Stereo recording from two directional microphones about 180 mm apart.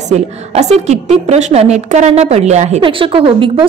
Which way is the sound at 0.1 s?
35° right (ahead or behind).